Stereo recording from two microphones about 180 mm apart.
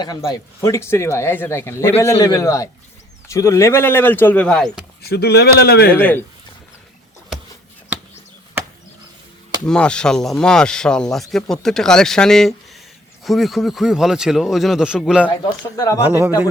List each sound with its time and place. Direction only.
0.0 s a man's voice: 20° left (ahead or behind); by 4.9 s centre (ahead or behind)
5.0 s a man's voice: 65° left (ahead or behind)
5.9 s speech: 10° left (ahead or behind)
8.6 s a sound: 10° right (ahead or behind)
9.6 s speech: 5° left (ahead or behind)
15.3 s speech: 20° left (ahead or behind)